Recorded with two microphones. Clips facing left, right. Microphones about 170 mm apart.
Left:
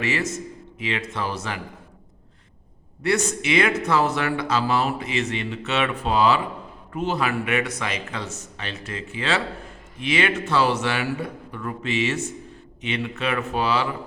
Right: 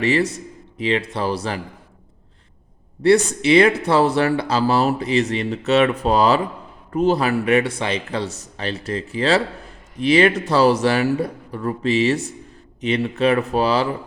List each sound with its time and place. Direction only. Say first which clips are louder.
0.0 s speech: right 7 dB; 35° right (ahead or behind)
3.0 s speech: right 8 dB; 35° right (ahead or behind)